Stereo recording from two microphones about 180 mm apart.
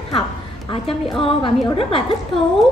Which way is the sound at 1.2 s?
30° left (ahead or behind).